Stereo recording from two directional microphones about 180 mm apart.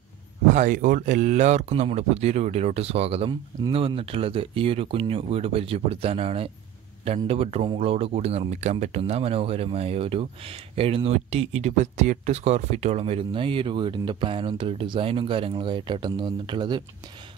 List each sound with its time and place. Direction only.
0.6 s speech: 45° right (ahead or behind); by 16.8 s 25° right (ahead or behind)